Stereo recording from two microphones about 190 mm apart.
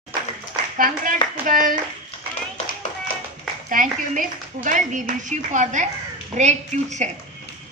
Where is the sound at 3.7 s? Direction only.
45° right (ahead or behind).